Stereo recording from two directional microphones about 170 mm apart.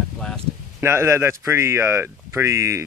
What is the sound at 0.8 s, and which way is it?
Speech, 15° right (ahead or behind).